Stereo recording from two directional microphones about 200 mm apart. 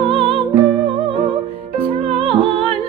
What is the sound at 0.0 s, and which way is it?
Music, 25° right (ahead or behind).